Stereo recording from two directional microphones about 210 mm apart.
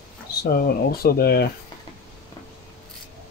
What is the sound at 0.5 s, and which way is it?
Speech, 45° left (ahead or behind).